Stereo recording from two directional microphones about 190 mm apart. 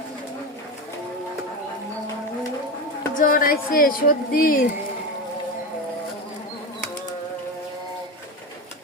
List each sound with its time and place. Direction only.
3.2 s speech: 50° left (ahead or behind)